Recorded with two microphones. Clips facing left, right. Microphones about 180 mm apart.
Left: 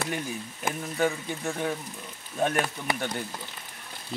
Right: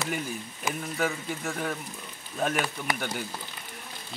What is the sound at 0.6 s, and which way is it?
Speech, 55° left (ahead or behind).